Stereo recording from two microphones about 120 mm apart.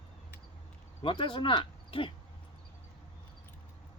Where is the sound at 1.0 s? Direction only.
45° left (ahead or behind).